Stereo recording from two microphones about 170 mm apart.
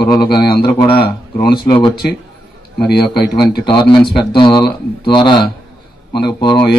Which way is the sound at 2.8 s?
70° left (ahead or behind).